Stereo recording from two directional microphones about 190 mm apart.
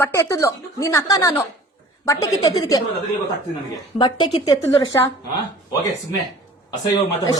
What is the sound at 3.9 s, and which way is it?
A woman's voice, 25° left (ahead or behind).